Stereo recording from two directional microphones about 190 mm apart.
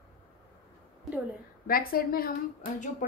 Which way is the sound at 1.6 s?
50° left (ahead or behind).